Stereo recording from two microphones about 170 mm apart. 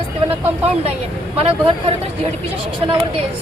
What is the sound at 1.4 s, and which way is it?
Speech, 35° right (ahead or behind).